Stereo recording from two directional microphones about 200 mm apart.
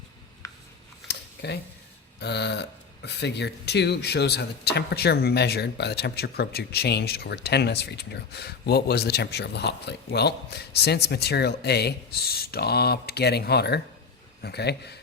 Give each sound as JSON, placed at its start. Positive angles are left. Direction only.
{"t": 0.4, "sound": "scissors", "side_deg": 15}
{"t": 1.0, "sound": "a sound", "side_deg": 55}
{"t": 2.1, "sound": "speech", "side_deg": 55}